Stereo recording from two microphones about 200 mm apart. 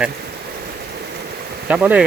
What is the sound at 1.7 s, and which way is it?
Speech, 5° right (ahead or behind).